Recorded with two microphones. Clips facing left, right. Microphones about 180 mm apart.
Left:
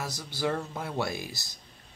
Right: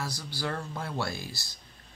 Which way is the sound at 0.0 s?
20° left (ahead or behind).